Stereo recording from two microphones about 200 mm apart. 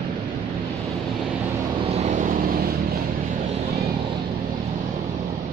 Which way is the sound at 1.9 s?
35° right (ahead or behind).